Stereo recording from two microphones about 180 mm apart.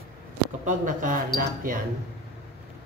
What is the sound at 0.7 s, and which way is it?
Speech, 45° right (ahead or behind).